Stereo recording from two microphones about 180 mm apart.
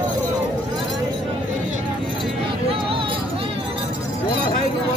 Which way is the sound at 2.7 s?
30° right (ahead or behind).